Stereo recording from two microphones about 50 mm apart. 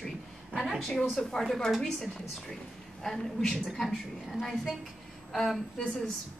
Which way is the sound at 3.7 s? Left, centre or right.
Centre.